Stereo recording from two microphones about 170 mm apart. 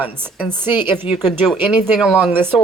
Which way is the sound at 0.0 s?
10° right (ahead or behind).